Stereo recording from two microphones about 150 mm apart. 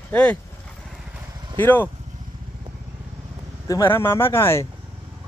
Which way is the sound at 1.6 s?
15° left (ahead or behind).